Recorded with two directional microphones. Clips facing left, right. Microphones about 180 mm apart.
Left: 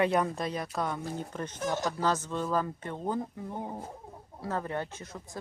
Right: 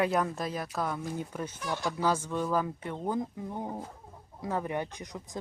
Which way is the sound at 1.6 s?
45° left (ahead or behind).